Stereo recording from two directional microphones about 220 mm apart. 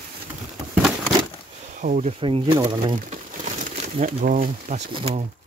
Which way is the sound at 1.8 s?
35° right (ahead or behind).